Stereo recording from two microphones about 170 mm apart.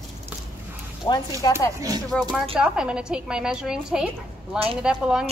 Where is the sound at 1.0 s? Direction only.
25° left (ahead or behind).